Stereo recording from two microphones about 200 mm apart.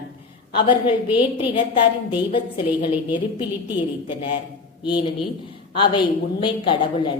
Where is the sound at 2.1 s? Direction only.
25° left (ahead or behind).